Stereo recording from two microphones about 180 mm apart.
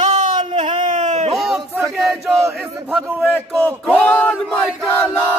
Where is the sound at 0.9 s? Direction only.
40° right (ahead or behind).